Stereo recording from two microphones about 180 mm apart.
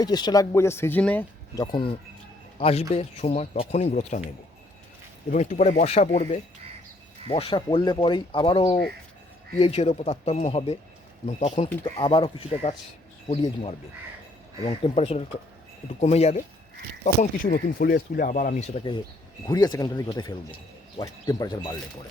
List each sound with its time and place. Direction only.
0.0 s speech: 25° left (ahead or behind)
1.5 s speech: 25° left (ahead or behind); by 4.3 s 40° left (ahead or behind)
5.3 s speech: 45° left (ahead or behind)
19.5 s speech: 20° left (ahead or behind)